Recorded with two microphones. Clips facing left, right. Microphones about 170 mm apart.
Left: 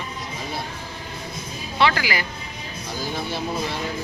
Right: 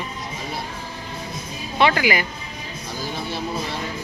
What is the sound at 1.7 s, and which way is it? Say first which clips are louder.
Speech: right 3 dB; 20° right (ahead or behind).